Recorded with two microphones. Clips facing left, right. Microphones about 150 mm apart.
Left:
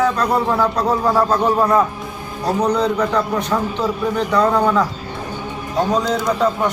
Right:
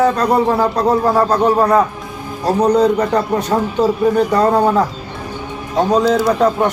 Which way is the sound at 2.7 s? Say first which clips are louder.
Right 4 dB; 40° right (ahead or behind).